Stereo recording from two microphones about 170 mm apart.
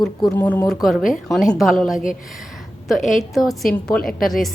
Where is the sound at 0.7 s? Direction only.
Centre (ahead or behind).